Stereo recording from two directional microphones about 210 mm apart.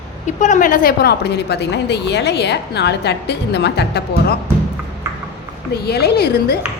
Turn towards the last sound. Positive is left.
turn(degrees=50)  # may be behind; listen again after turning